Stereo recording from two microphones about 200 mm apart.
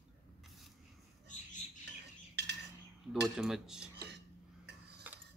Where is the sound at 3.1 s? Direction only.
Centre (ahead or behind).